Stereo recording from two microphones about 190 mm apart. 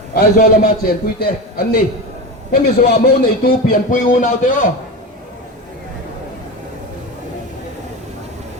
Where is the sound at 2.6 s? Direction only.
55° left (ahead or behind).